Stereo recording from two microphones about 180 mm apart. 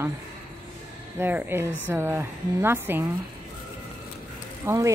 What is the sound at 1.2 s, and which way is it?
A woman's voice, 10° right (ahead or behind).